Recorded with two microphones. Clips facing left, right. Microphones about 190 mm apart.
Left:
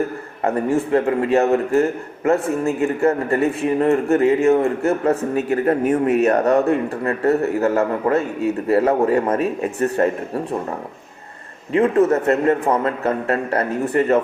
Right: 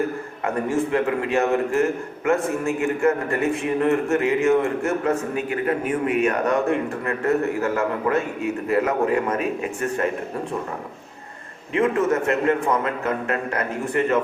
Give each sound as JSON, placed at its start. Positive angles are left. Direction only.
{"t": 0.4, "sound": "a man's voice", "side_deg": 35}
{"t": 11.7, "sound": "a man's voice", "side_deg": 35}